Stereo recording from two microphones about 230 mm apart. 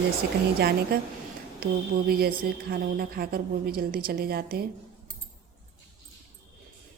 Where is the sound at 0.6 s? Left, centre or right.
Right.